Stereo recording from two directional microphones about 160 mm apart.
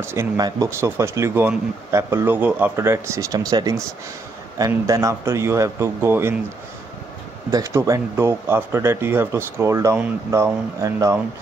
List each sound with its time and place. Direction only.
0.0 s speech: 15° right (ahead or behind)
7.5 s speech: 20° right (ahead or behind)